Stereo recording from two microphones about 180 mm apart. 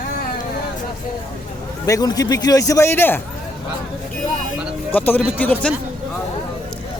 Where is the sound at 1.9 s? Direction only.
20° left (ahead or behind).